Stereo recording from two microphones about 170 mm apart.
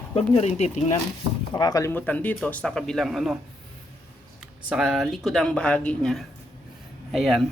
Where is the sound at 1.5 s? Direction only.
25° left (ahead or behind); by 3.4 s centre (ahead or behind).